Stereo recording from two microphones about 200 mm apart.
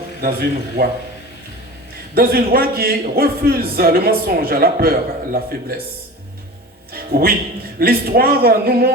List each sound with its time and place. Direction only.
0.2 s a man's voice: 50° right (ahead or behind)
2.1 s a man's voice: 50° right (ahead or behind)
6.9 s music: 50° right (ahead or behind)
7.8 s a man's voice: 50° right (ahead or behind)